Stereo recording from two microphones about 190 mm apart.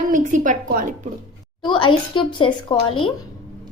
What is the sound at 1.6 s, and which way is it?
Speech, 25° left (ahead or behind).